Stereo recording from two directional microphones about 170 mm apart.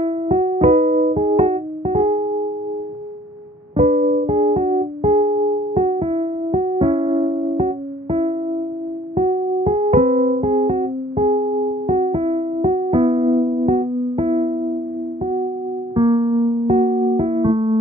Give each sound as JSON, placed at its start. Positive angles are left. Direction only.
{"t": 0.0, "sound": "music", "side_deg": -35}
{"t": 3.7, "sound": "music", "side_deg": -40}
{"t": 15.9, "sound": "music", "side_deg": -25}